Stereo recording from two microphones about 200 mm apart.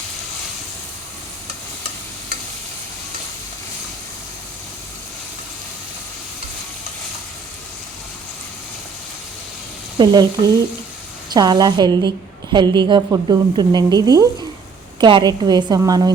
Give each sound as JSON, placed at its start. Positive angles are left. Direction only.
{"t": 10.0, "sound": "a woman's voice", "side_deg": -20}